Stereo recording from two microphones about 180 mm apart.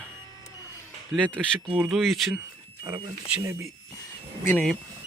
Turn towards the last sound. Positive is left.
turn(degrees=10)  # may be behind; listen again after turning